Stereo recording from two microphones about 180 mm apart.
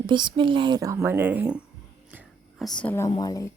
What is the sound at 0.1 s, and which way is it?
Speech, 25° right (ahead or behind).